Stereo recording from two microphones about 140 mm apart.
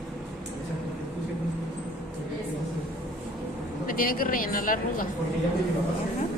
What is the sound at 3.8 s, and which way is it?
Speech, 90° left.